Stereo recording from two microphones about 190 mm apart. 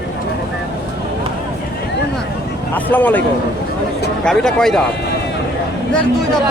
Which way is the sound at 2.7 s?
10° left (ahead or behind).